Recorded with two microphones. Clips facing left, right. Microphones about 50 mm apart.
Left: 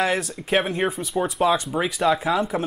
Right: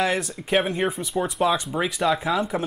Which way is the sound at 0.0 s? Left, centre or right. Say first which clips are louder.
Left 1 dB; centre.